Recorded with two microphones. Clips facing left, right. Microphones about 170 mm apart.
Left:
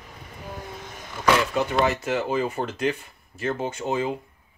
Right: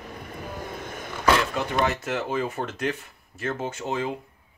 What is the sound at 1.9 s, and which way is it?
Speech, centre (ahead or behind).